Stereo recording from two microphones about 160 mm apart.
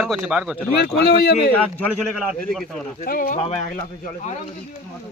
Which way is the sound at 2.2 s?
5° right (ahead or behind).